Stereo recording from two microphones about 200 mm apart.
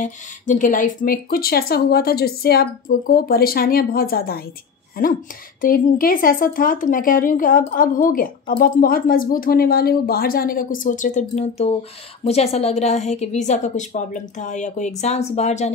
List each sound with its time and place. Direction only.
0.0 s speech: 40° left (ahead or behind)
5.6 s a woman's voice: 45° left (ahead or behind)